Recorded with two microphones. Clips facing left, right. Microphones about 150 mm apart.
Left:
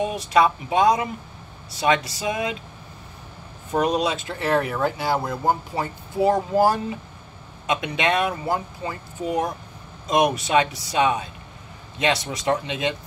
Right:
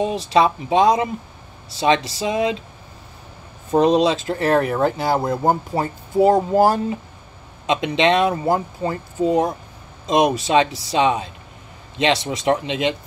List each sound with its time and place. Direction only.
0.0 s speech: 25° right (ahead or behind)
3.7 s speech: 25° right (ahead or behind); by 6.2 s 45° right (ahead or behind)
6.2 s speech: 20° right (ahead or behind)
7.6 s speech: 25° right (ahead or behind)
8.5 s speech: 40° right (ahead or behind)
10.0 s speech: 25° right (ahead or behind)